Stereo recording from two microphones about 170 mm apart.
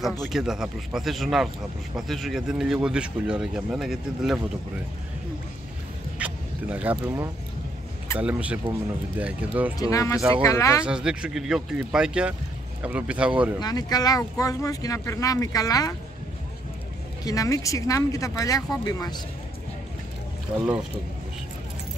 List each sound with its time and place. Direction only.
0.2 s speech: centre (ahead or behind)
6.1 s a sound: 10° right (ahead or behind)
8.2 s speech: 10° right (ahead or behind)
9.8 s speech: 20° left (ahead or behind)
10.9 s speech: 5° right (ahead or behind)
13.6 s speech: 25° left (ahead or behind)
17.2 s speech: 20° left (ahead or behind)